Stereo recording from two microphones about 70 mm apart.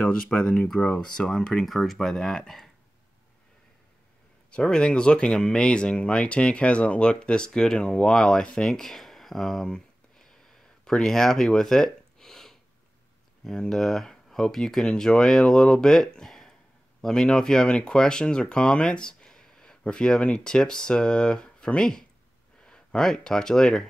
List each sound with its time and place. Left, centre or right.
0.0 s speech: centre
4.5 s speech: centre